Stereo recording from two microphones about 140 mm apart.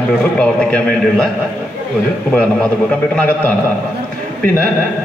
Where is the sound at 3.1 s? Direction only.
10° left (ahead or behind).